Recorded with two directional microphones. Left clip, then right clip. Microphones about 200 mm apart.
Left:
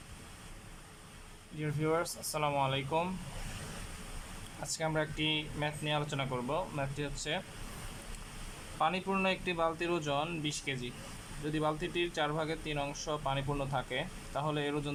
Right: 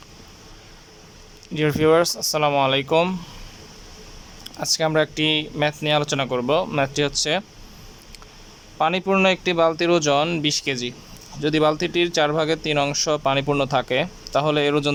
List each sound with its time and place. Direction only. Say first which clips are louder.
1.5 s speech: right 17 dB; 60° right (ahead or behind)
4.6 s speech: right 15 dB; 55° right (ahead or behind)
8.8 s speech: right 13 dB; 50° right (ahead or behind)